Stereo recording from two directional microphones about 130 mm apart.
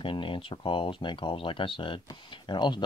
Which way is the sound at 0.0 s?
40° left (ahead or behind).